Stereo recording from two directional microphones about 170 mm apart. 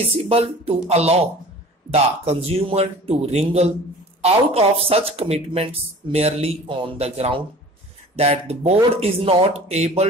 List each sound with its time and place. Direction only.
0.2 s speech: 35° right (ahead or behind)